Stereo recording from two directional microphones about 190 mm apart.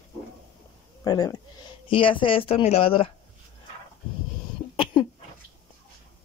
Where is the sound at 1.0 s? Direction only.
20° left (ahead or behind).